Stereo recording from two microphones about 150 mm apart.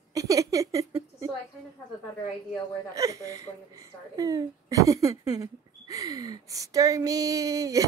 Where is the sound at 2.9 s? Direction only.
20° right (ahead or behind).